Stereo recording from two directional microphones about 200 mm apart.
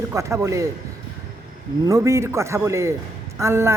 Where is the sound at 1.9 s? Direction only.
15° right (ahead or behind).